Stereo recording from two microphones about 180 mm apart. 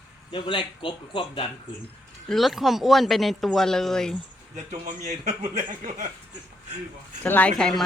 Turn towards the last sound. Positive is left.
turn(degrees=5)  # may be behind; listen again after turning